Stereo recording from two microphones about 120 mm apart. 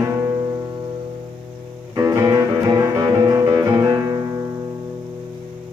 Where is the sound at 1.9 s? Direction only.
25° right (ahead or behind).